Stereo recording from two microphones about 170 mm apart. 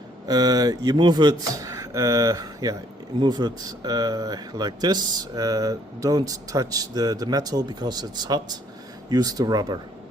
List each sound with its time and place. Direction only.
0.3 s speech: 25° right (ahead or behind)